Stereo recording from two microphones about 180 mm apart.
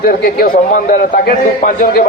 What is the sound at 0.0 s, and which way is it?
A man's voice, 55° left (ahead or behind).